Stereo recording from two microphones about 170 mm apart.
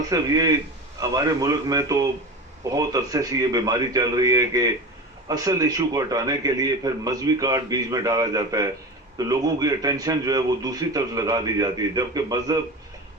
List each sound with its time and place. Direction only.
0.1 s a man's voice: 20° right (ahead or behind)